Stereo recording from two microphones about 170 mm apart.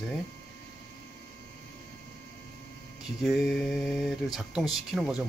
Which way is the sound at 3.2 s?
Centre (ahead or behind).